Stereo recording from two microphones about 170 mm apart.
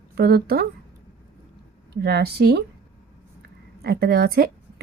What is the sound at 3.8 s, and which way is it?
Speech, 65° right (ahead or behind).